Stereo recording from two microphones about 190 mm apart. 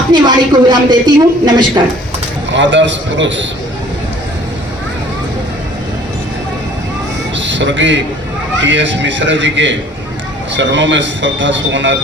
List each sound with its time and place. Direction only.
0.1 s a woman's voice: 25° right (ahead or behind)
2.5 s a man's voice: 75° right (ahead or behind)
7.3 s a sound: 75° right (ahead or behind)
8.6 s a man's voice: 75° right (ahead or behind)